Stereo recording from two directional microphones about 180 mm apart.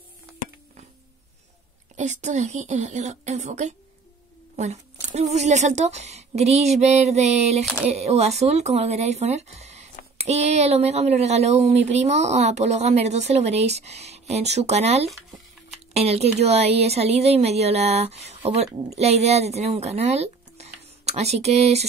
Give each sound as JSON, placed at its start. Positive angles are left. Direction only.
{"t": 2.0, "sound": "speech", "side_deg": -40}